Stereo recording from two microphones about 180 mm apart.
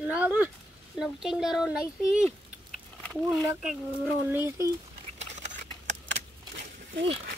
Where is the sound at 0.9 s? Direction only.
Centre (ahead or behind).